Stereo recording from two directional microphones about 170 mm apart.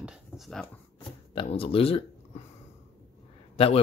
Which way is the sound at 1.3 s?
30° left (ahead or behind).